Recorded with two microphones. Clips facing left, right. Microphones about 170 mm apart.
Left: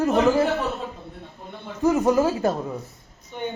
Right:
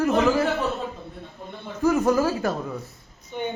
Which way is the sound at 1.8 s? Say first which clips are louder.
Left 1 dB; 20° left (ahead or behind).